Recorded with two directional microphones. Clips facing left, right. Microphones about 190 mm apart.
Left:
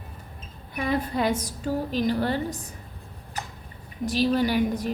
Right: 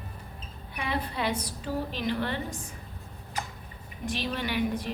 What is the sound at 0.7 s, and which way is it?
A woman's voice, 45° left (ahead or behind).